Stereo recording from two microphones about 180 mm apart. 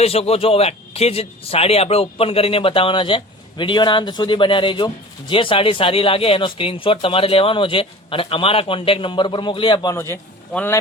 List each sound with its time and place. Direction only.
0.0 s a man's voice: 35° left (ahead or behind); by 10.8 s 10° left (ahead or behind)